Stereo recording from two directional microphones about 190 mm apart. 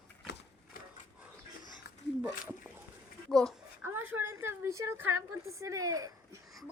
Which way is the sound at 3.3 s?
5° left (ahead or behind).